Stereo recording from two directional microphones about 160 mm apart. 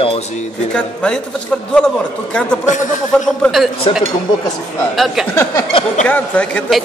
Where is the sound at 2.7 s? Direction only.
50° left (ahead or behind).